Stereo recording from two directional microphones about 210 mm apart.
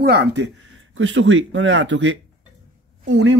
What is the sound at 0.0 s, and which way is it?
Speech, 50° right (ahead or behind).